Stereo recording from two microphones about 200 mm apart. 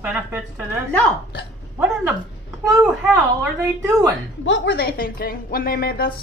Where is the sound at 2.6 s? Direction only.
15° right (ahead or behind).